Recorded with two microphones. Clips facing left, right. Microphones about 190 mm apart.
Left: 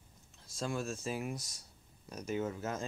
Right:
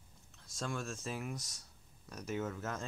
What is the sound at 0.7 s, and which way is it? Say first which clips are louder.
Speech: left 4 dB; 35° left (ahead or behind).